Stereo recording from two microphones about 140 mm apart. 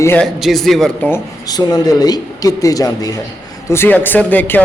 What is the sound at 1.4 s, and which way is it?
A man's voice, 30° left (ahead or behind).